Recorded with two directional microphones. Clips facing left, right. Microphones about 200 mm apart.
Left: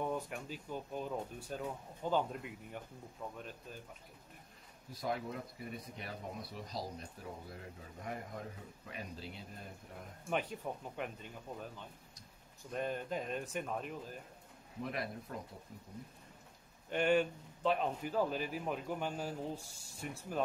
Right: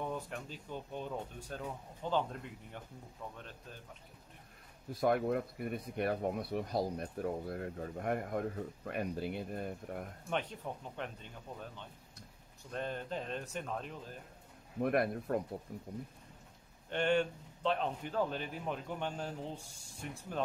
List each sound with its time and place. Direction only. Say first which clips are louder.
0.0 s speech: left 1 dB; 10° left (ahead or behind)
5.0 s speech: right 8 dB; 60° right (ahead or behind)
10.3 s speech: left 1 dB; 5° left (ahead or behind)
14.8 s speech: right 9 dB; 55° right (ahead or behind)
16.9 s speech: even; 5° left (ahead or behind)